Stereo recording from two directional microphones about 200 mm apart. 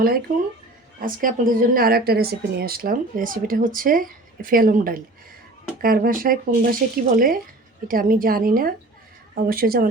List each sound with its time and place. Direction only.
1.0 s a woman's voice: 45° right (ahead or behind)